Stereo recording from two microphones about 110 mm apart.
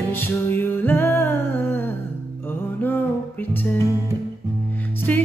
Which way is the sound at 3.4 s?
15° left (ahead or behind).